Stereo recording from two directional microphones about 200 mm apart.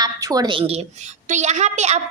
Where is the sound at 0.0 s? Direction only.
20° right (ahead or behind).